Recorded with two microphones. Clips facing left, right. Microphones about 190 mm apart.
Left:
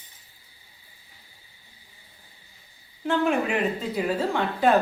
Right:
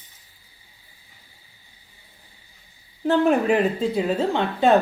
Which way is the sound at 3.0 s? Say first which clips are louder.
Right 5 dB; 40° right (ahead or behind).